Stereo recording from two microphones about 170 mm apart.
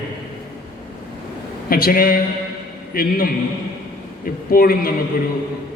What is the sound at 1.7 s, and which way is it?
A man's voice, 60° left (ahead or behind).